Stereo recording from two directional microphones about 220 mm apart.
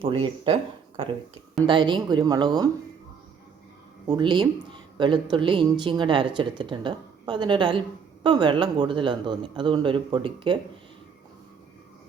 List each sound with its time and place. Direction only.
0.0 s speech: 25° right (ahead or behind)
4.1 s speech: 20° right (ahead or behind)